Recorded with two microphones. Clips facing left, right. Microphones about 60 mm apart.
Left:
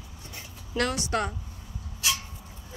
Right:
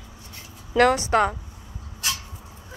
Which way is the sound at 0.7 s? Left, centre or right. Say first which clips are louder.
Right 9 dB; right.